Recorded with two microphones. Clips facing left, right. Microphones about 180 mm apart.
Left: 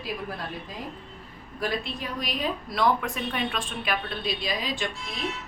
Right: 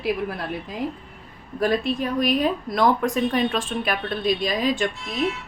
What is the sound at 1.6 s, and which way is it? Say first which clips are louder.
Speech: right 8 dB; 50° right (ahead or behind).